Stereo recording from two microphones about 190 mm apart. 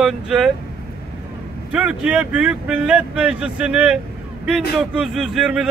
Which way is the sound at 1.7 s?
5° right (ahead or behind).